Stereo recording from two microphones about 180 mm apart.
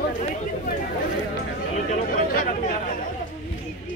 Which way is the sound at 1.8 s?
55° left (ahead or behind).